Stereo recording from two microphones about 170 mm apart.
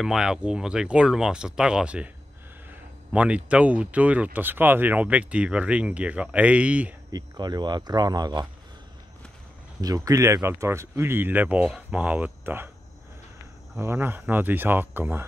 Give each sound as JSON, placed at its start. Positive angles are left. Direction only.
{"t": 0.0, "sound": "speech", "side_deg": -5}
{"t": 3.1, "sound": "speech", "side_deg": -5}
{"t": 7.1, "sound": "speech", "side_deg": -25}
{"t": 9.8, "sound": "speech", "side_deg": -20}
{"t": 13.7, "sound": "speech", "side_deg": -15}